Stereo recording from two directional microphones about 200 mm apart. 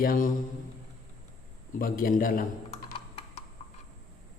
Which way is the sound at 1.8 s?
45° left (ahead or behind).